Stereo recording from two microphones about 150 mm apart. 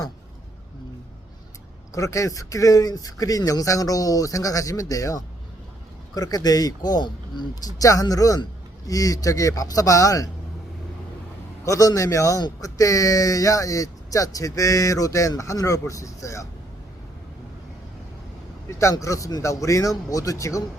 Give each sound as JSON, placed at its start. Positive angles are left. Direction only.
{"t": 1.9, "sound": "speech", "side_deg": 20}
{"t": 11.6, "sound": "speech", "side_deg": 20}
{"t": 18.8, "sound": "speech", "side_deg": 20}